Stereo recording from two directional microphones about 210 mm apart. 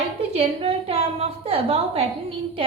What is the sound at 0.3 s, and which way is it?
A woman's voice, 30° right (ahead or behind).